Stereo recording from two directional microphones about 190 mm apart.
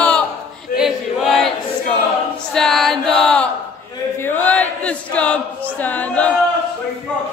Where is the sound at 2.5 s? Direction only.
Centre (ahead or behind).